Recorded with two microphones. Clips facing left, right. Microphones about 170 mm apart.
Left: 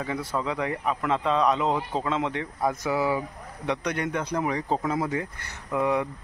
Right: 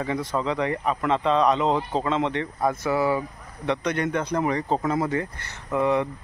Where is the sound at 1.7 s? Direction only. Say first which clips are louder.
Right 3 dB; 25° right (ahead or behind).